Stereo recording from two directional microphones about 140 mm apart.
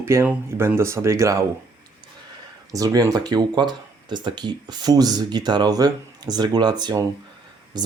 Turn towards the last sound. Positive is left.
turn(degrees=-30)  # may be behind; listen again after turning